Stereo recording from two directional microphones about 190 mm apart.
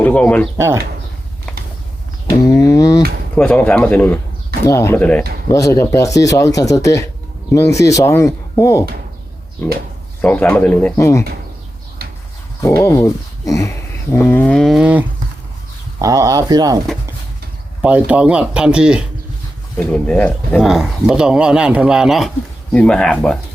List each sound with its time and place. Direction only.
0.0 s speech: 5° left (ahead or behind)
0.5 s speech: 15° right (ahead or behind)
1.5 s a sound: 5° left (ahead or behind)
2.5 s speech: 20° left (ahead or behind)
3.3 s a man's voice: 10° left (ahead or behind)
10.9 s speech: 15° left (ahead or behind)
12.6 s speech: 15° left (ahead or behind); by 15.0 s 5° right (ahead or behind)
16.0 s speech: 20° right (ahead or behind)
17.8 s a man's voice: 5° right (ahead or behind)
19.7 s a man's voice: 5° left (ahead or behind)